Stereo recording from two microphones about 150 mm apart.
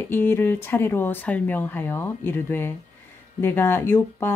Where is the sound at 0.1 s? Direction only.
15° left (ahead or behind).